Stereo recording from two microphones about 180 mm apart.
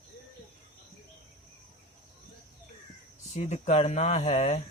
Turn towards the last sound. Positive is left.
turn(degrees=40)  # may be behind; listen again after turning